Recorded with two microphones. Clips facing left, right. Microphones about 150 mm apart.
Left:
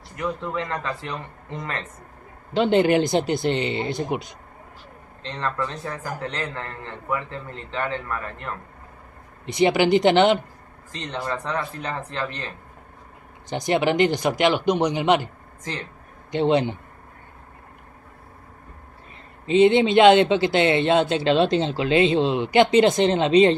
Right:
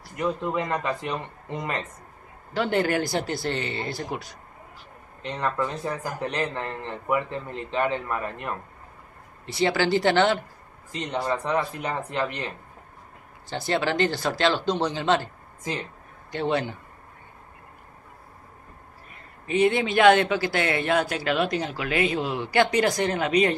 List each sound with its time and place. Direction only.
0.1 s a man's voice: 20° right (ahead or behind)
2.5 s speech: 20° left (ahead or behind)
5.2 s a man's voice: 10° right (ahead or behind)
9.5 s speech: 20° left (ahead or behind)
10.9 s a man's voice: 15° right (ahead or behind)
13.5 s speech: 20° left (ahead or behind)
16.3 s speech: 20° left (ahead or behind)
19.4 s speech: 25° left (ahead or behind)